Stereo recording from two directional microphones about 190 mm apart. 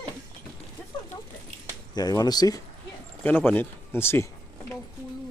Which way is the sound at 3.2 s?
10° left (ahead or behind).